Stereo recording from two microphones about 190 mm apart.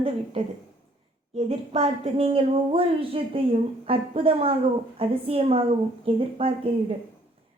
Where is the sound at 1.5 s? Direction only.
30° right (ahead or behind).